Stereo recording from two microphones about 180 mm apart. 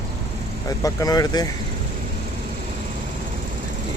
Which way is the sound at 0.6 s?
20° left (ahead or behind).